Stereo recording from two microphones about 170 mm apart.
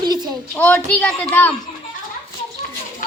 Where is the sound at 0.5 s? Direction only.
10° left (ahead or behind).